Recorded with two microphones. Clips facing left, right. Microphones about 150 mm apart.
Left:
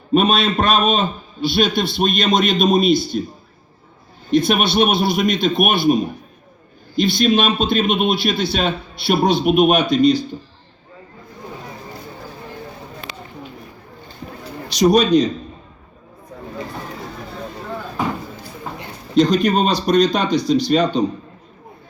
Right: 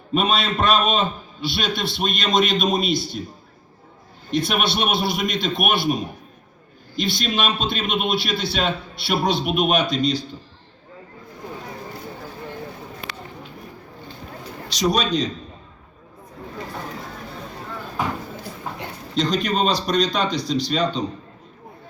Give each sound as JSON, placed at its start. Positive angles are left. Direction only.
{"t": 0.1, "sound": "a man's voice", "side_deg": 50}
{"t": 4.3, "sound": "a man's voice", "side_deg": 50}
{"t": 7.0, "sound": "a man's voice", "side_deg": 50}
{"t": 13.1, "sound": "a sound", "side_deg": 20}
{"t": 14.7, "sound": "a man's voice", "side_deg": 55}
{"t": 19.1, "sound": "a man's voice", "side_deg": 50}